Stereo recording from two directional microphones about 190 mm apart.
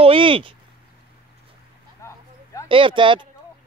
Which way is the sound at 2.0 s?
15° left (ahead or behind).